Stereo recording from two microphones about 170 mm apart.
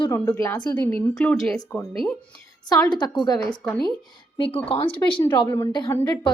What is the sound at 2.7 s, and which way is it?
Speech, 25° left (ahead or behind).